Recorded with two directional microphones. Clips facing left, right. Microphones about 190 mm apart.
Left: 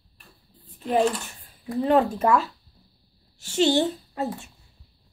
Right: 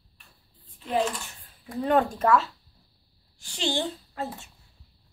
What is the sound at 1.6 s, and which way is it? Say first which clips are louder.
Speech: left 3 dB; centre (ahead or behind).